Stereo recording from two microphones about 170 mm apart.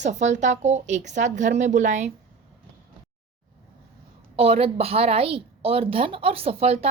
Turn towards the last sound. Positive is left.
turn(degrees=-35)  # may be behind; listen again after turning